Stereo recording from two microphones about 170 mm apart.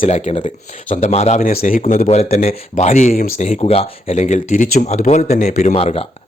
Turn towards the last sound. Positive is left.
turn(degrees=35)  # may be behind; listen again after turning